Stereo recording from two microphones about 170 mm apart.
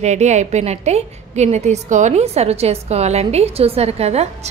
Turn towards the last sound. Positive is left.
turn(degrees=-40)  # may be behind; listen again after turning